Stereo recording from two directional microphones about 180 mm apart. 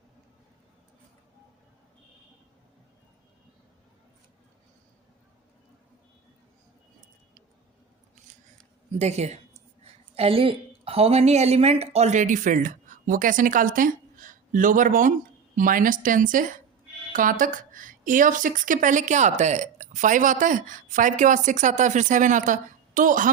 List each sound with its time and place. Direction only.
9.0 s a woman's voice: 40° right (ahead or behind)